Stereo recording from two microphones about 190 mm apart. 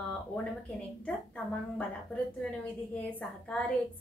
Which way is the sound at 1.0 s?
5° left (ahead or behind).